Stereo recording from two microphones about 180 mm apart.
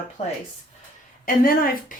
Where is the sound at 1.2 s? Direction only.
50° left (ahead or behind).